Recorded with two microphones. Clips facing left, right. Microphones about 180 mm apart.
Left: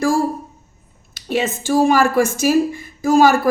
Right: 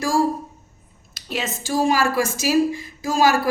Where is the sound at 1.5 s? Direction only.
55° left (ahead or behind).